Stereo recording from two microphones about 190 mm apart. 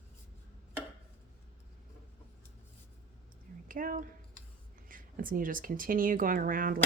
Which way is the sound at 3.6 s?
45° right (ahead or behind).